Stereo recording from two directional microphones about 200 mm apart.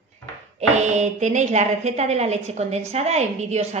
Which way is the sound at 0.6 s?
35° right (ahead or behind).